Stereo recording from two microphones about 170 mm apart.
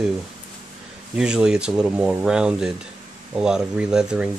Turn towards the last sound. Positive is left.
turn(degrees=-5)  # may be behind; listen again after turning